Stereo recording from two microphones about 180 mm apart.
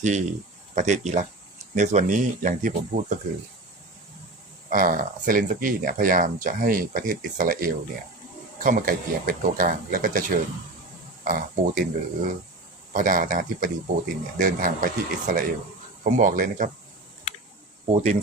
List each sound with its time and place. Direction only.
0.0 s speech: 40° right (ahead or behind)
4.7 s speech: 50° right (ahead or behind)
17.8 s speech: 40° right (ahead or behind)